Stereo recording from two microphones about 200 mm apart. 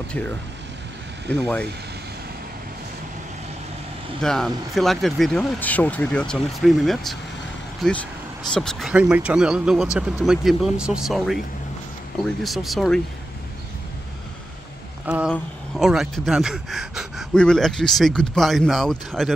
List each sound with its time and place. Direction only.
1.3 s speech: 5° left (ahead or behind)
4.2 s speech: centre (ahead or behind)
12.4 s speech: centre (ahead or behind)
15.0 s speech: 5° right (ahead or behind)